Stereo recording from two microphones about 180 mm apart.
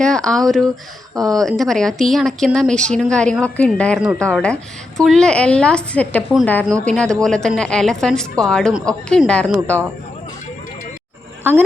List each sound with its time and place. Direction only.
0.0 s a woman's voice: 5° left (ahead or behind)
1.1 s speech: 20° right (ahead or behind)
1.4 s a woman's voice: centre (ahead or behind)